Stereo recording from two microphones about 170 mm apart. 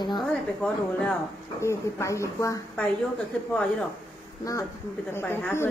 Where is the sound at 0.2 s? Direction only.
5° left (ahead or behind).